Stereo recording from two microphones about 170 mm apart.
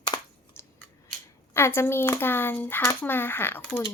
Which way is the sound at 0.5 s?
15° left (ahead or behind).